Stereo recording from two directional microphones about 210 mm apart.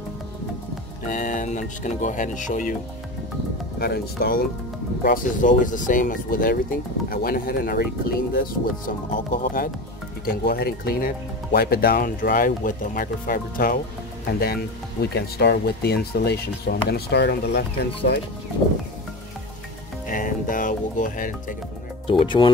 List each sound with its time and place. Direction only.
1.0 s speech: 40° left (ahead or behind)
3.8 s speech: 50° left (ahead or behind)
20.1 s music: 40° left (ahead or behind)
22.2 s speech: 25° left (ahead or behind)